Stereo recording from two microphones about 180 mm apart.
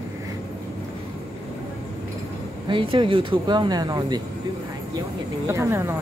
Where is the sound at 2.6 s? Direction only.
25° right (ahead or behind).